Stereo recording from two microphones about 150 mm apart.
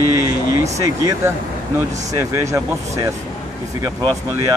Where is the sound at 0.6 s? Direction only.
20° right (ahead or behind).